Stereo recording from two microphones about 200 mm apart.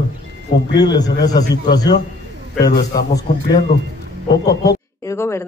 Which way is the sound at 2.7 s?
50° left (ahead or behind).